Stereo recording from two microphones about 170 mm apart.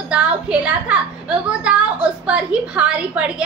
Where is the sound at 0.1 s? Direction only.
5° right (ahead or behind).